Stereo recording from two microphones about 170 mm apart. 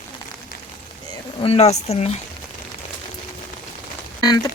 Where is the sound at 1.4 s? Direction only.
35° left (ahead or behind).